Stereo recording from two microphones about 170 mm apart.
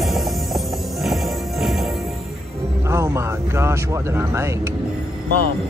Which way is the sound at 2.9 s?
15° right (ahead or behind).